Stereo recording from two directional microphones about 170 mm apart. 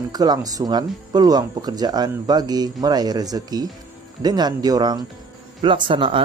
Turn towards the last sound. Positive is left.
turn(degrees=-30)  # may be behind; listen again after turning